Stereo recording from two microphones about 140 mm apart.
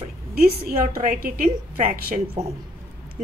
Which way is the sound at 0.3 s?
90° right.